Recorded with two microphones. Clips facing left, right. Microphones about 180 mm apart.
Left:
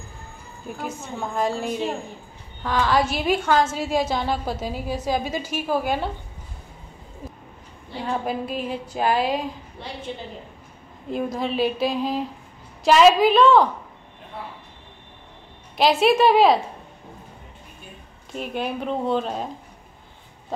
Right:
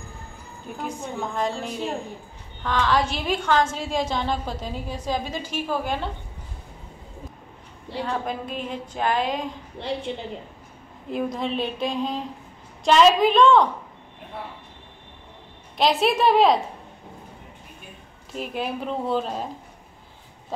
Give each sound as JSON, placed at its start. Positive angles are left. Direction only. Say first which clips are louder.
{"t": 0.8, "sound": "a woman's voice", "louder": "right 1 dB", "side_deg": 5}
{"t": 8.3, "sound": "a woman's voice", "louder": "left 3 dB", "side_deg": 5}
{"t": 9.8, "sound": "a woman's voice", "louder": "right 8 dB", "side_deg": -25}
{"t": 11.1, "sound": "a woman's voice", "louder": "left 1 dB", "side_deg": 0}
{"t": 15.8, "sound": "a woman's voice", "louder": "left 3 dB", "side_deg": 0}
{"t": 18.3, "sound": "a woman's voice", "louder": "left 1 dB", "side_deg": 0}